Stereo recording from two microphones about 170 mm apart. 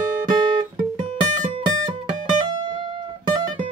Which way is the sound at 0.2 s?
25° right (ahead or behind).